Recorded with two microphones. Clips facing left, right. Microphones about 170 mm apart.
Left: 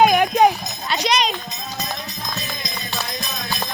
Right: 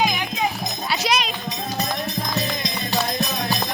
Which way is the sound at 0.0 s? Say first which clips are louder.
Left 9 dB; 60° left (ahead or behind).